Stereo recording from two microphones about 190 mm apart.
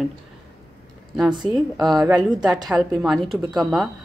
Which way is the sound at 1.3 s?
25° right (ahead or behind).